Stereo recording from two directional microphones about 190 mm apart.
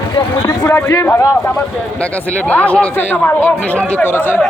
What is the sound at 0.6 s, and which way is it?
Speech, 10° left (ahead or behind).